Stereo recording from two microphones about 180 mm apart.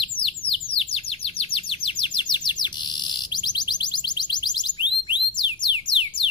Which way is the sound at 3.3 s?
25° left (ahead or behind).